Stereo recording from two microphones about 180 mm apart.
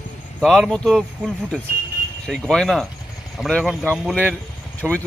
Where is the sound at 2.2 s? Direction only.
5° left (ahead or behind).